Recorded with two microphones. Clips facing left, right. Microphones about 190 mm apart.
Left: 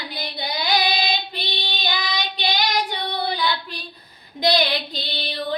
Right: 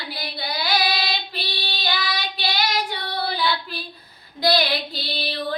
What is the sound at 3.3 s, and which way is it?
Child singing, 5° right (ahead or behind).